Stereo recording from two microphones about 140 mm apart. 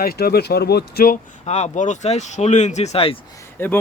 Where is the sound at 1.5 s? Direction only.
55° left (ahead or behind).